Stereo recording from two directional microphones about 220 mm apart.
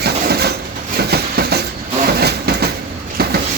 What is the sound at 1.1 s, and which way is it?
Train, 45° right (ahead or behind).